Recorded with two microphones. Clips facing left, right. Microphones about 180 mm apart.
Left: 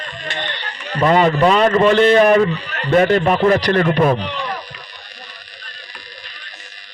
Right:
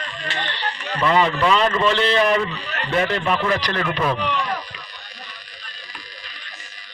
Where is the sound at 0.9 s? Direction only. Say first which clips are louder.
Left 5 dB; 45° left (ahead or behind).